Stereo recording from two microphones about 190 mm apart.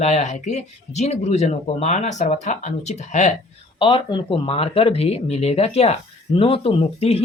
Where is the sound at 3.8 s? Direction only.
25° left (ahead or behind).